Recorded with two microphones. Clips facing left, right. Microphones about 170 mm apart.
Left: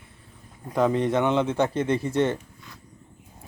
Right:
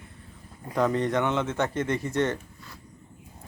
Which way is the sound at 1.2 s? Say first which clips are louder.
Left 4 dB; 15° left (ahead or behind).